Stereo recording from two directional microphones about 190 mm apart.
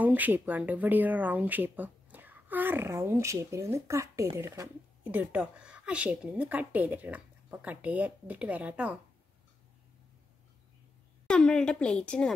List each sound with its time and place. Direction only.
0.0 s speech: 10° right (ahead or behind)
11.2 s speech: 5° left (ahead or behind)